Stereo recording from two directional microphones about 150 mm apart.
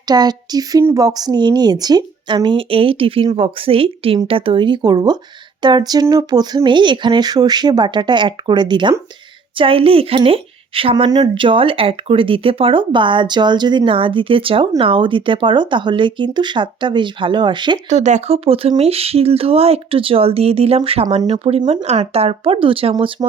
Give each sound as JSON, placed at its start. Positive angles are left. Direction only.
{"t": 0.1, "sound": "a woman's voice", "side_deg": -25}
{"t": 17.8, "sound": "a woman's voice", "side_deg": -50}